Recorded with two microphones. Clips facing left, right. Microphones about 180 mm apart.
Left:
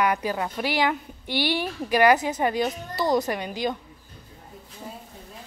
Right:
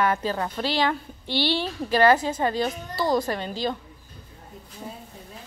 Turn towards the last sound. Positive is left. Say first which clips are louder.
# even
turn(degrees=15)  # may be behind; listen again after turning